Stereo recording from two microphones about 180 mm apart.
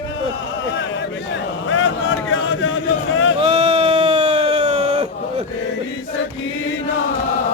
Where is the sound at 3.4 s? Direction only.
30° right (ahead or behind).